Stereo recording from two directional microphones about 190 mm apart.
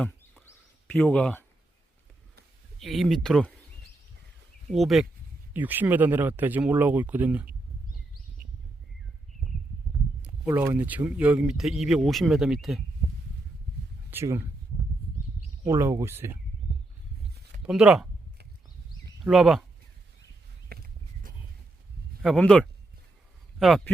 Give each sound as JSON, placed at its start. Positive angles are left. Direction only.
{"t": 0.0, "sound": "a sound", "side_deg": 5}
{"t": 2.7, "sound": "speech", "side_deg": 0}
{"t": 4.7, "sound": "speech", "side_deg": 0}
{"t": 10.2, "sound": "speech", "side_deg": -10}
{"t": 14.1, "sound": "speech", "side_deg": -10}
{"t": 15.6, "sound": "speech", "side_deg": -15}
{"t": 17.6, "sound": "speech", "side_deg": -5}
{"t": 19.2, "sound": "speech", "side_deg": 0}
{"t": 20.7, "sound": "a sound", "side_deg": -50}
{"t": 22.2, "sound": "speech", "side_deg": 5}